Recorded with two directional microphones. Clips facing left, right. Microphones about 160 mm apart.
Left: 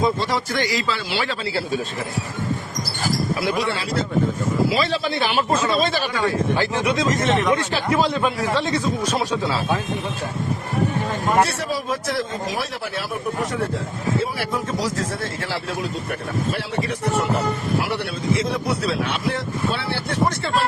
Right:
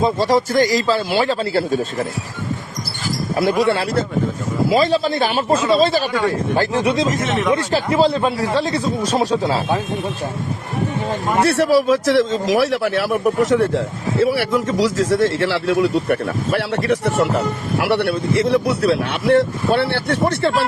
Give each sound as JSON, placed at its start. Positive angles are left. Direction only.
{"t": 0.0, "sound": "speech", "side_deg": -40}
{"t": 3.3, "sound": "a man's voice", "side_deg": -55}
{"t": 4.7, "sound": "speech", "side_deg": -40}
{"t": 7.3, "sound": "speech", "side_deg": 0}
{"t": 7.5, "sound": "speech", "side_deg": -30}
{"t": 11.4, "sound": "a man's voice", "side_deg": -70}